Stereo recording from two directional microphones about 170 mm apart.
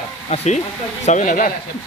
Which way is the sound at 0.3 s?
40° left (ahead or behind).